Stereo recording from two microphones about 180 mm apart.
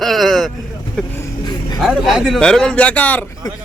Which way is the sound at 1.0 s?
5° left (ahead or behind).